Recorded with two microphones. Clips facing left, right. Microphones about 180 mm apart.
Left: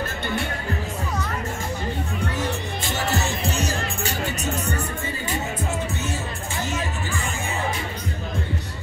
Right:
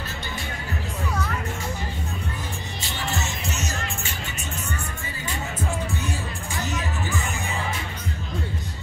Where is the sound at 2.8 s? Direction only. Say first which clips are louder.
Left 4 dB; 45° left (ahead or behind).